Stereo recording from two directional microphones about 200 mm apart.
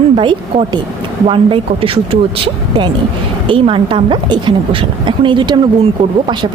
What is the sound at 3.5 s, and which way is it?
A woman's voice, 25° right (ahead or behind).